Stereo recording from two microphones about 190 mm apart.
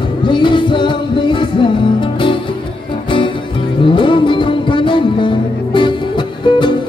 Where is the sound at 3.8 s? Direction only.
25° left (ahead or behind).